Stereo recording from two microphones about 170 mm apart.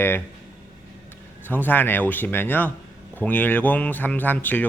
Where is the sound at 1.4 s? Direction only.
10° left (ahead or behind).